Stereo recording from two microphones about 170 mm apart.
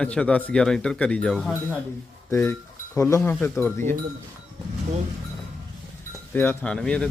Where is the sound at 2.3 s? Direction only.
15° left (ahead or behind).